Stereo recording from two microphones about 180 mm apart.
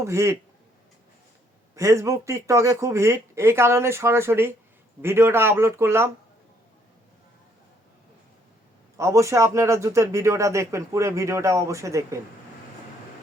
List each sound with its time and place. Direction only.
0.0 s a man's voice: 15° right (ahead or behind)
1.7 s a man's voice: 15° right (ahead or behind)
9.0 s a man's voice: 15° right (ahead or behind)